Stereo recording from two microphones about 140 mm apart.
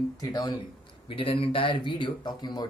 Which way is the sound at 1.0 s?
40° left (ahead or behind).